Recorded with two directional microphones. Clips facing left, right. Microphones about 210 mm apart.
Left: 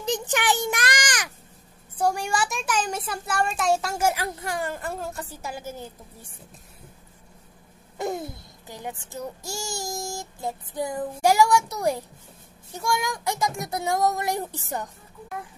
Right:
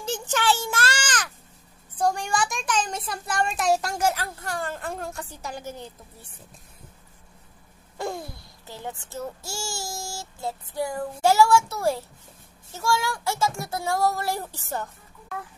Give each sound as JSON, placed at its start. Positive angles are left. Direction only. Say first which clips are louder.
{"t": 0.0, "sound": "a sound", "louder": "even", "side_deg": 15}
{"t": 2.0, "sound": "a child's voice", "louder": "even", "side_deg": 5}
{"t": 8.0, "sound": "a child's voice", "louder": "left 3 dB", "side_deg": 20}